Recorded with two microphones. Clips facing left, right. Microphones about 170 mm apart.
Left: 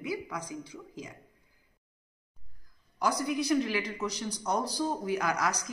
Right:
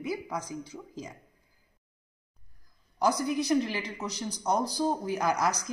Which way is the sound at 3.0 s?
35° right (ahead or behind).